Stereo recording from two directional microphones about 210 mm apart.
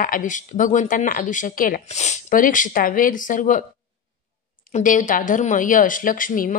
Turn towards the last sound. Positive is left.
turn(degrees=40)  # may be behind; listen again after turning